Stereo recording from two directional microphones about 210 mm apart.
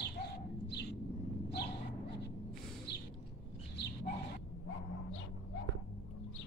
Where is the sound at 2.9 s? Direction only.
55° left (ahead or behind).